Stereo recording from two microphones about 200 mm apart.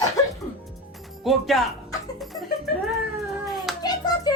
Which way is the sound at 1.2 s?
Centre (ahead or behind).